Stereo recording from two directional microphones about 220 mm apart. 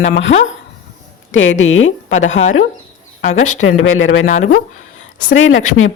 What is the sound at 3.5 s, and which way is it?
Speech, 65° left (ahead or behind).